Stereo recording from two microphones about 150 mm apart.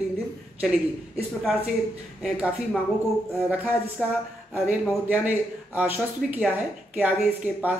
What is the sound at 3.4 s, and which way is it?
A woman's voice, 10° right (ahead or behind).